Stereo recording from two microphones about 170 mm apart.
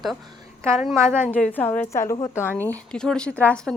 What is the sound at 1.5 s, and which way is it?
A woman's voice, 10° left (ahead or behind).